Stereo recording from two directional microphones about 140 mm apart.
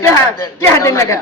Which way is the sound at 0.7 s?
20° left (ahead or behind).